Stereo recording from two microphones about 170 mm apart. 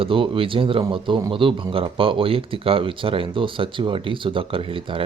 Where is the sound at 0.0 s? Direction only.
30° right (ahead or behind).